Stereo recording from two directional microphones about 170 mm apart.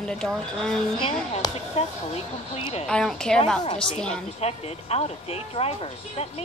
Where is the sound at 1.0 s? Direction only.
30° left (ahead or behind).